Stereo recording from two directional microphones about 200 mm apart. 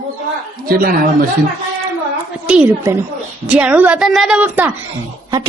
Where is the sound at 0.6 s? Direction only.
45° right (ahead or behind).